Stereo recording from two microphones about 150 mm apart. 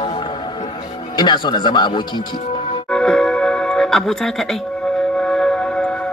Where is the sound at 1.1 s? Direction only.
30° left (ahead or behind).